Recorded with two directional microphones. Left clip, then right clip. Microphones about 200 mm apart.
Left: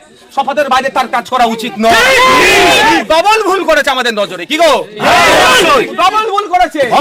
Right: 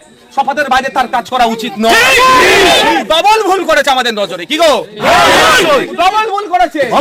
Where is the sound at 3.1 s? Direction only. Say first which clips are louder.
Even; centre (ahead or behind).